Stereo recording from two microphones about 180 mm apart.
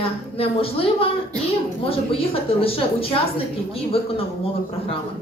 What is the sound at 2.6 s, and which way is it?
Speech, 30° left (ahead or behind).